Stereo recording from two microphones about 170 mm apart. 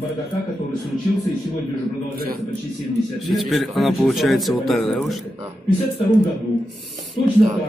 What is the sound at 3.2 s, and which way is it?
Speech, centre (ahead or behind).